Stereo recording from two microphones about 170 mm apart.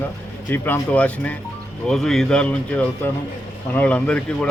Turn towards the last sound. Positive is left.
turn(degrees=5)  # may be behind; listen again after turning